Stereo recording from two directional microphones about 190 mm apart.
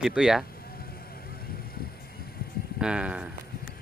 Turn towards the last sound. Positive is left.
turn(degrees=-5)  # may be behind; listen again after turning